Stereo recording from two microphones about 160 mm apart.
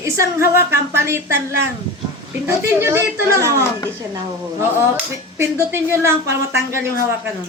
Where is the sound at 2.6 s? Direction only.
15° right (ahead or behind).